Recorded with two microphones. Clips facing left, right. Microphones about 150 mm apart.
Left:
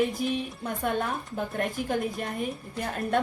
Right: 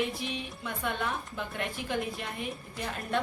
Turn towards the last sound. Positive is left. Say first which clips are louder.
# left 4 dB
turn(degrees=45)  # may be behind; listen again after turning